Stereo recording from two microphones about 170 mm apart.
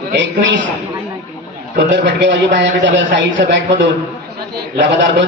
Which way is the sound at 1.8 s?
90° right.